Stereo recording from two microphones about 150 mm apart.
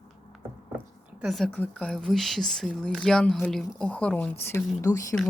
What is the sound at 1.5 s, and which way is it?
Speech, 10° left (ahead or behind).